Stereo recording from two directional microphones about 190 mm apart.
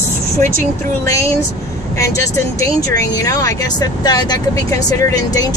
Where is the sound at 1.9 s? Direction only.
15° left (ahead or behind).